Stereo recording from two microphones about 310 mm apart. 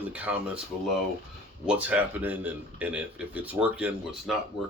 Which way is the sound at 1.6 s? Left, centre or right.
Centre.